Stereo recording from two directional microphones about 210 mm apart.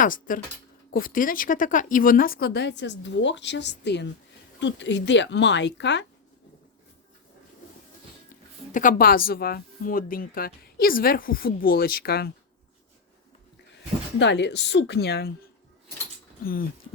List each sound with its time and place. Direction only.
0.0 s speech: 40° left (ahead or behind); by 6.1 s 55° left (ahead or behind)
8.7 s speech: 40° left (ahead or behind)
14.2 s speech: 55° left (ahead or behind)
16.4 s speech: 45° left (ahead or behind)